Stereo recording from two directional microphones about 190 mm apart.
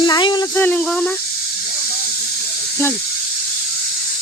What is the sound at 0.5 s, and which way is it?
Speech, 10° left (ahead or behind).